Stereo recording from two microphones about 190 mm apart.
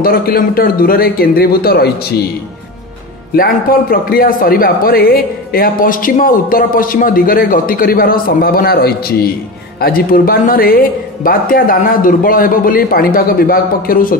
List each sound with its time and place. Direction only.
0.0 s speech: 50° left (ahead or behind)
3.9 s speech: 50° left (ahead or behind)